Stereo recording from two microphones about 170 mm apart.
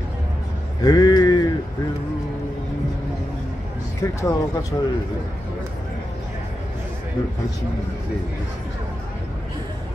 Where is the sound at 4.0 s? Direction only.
20° left (ahead or behind).